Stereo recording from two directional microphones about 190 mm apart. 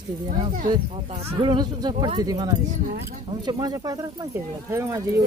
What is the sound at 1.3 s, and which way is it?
Speech, 25° right (ahead or behind).